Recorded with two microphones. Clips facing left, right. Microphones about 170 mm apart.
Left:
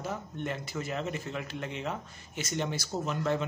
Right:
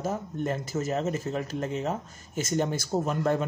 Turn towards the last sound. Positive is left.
turn(degrees=-45)  # may be behind; listen again after turning